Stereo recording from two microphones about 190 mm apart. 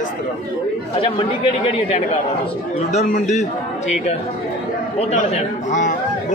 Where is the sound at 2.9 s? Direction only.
35° left (ahead or behind).